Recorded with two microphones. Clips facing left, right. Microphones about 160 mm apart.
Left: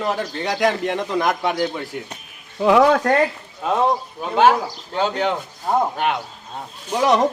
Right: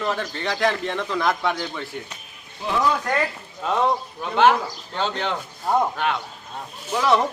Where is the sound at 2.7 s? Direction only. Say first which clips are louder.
Left 8 dB; 85° left.